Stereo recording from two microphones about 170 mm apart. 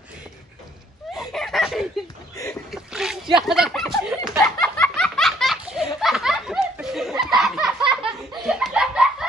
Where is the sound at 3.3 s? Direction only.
5° right (ahead or behind).